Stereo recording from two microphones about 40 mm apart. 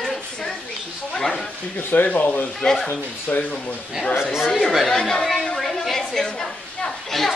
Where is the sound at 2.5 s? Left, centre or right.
Centre.